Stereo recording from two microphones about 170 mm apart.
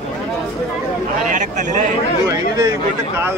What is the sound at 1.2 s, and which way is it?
Speech, 45° right (ahead or behind).